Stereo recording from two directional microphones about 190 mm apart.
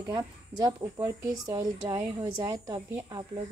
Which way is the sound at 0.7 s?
20° right (ahead or behind).